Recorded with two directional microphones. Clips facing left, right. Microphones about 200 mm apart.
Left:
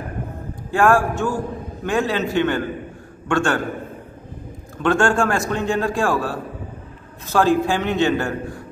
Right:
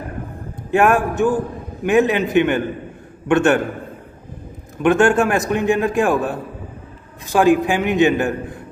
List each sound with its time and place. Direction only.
0.7 s a man's voice: 20° right (ahead or behind)
4.8 s a man's voice: 20° right (ahead or behind)